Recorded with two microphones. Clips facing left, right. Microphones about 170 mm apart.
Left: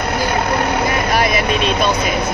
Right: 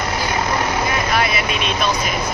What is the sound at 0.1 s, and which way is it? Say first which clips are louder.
Vehicle: left 5 dB; 60° left (ahead or behind).